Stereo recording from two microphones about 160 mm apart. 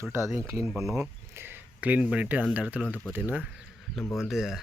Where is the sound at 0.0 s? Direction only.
15° right (ahead or behind).